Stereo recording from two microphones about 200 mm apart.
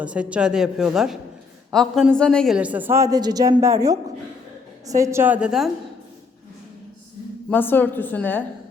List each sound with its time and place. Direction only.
0.0 s a woman's voice: 5° right (ahead or behind)
7.5 s a woman's voice: 10° left (ahead or behind)